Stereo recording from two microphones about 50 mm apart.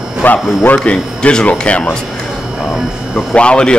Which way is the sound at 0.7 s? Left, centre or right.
Centre.